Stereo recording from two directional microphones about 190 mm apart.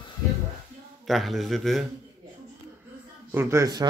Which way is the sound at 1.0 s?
Centre (ahead or behind).